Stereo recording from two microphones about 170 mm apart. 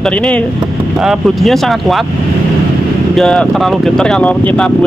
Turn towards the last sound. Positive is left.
turn(degrees=5)  # may be behind; listen again after turning